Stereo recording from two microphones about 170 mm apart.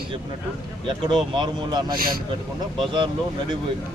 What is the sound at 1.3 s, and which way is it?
Speech, 25° right (ahead or behind).